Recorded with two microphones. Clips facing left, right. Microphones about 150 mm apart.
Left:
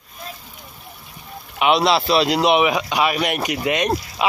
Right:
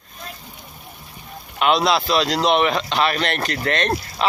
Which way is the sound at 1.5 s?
5° left (ahead or behind).